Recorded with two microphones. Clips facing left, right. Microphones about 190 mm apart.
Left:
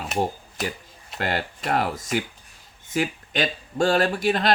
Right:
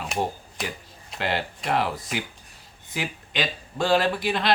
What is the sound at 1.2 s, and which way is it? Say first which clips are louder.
Speech: left 1 dB; 45° left (ahead or behind).